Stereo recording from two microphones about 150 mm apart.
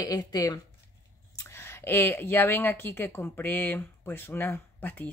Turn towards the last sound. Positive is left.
turn(degrees=15)  # may be behind; listen again after turning